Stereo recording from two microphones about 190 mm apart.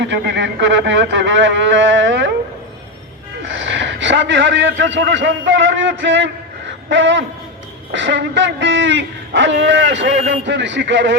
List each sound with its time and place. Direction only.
0.0 s a man's voice: 70° right (ahead or behind)
3.5 s a man's voice: 75° right (ahead or behind)